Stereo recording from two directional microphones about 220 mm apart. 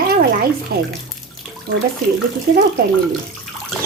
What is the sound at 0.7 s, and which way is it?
Speech, 45° right (ahead or behind).